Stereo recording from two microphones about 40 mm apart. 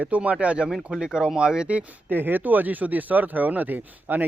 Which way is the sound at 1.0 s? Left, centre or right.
Centre.